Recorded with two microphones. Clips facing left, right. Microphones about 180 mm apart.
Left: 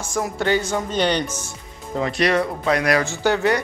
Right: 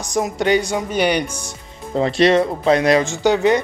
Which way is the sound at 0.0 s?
20° right (ahead or behind).